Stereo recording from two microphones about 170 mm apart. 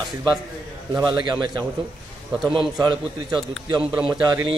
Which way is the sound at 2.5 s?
25° right (ahead or behind).